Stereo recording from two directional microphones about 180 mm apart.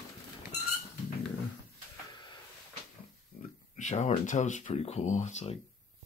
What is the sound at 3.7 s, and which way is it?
Speech, 40° left (ahead or behind).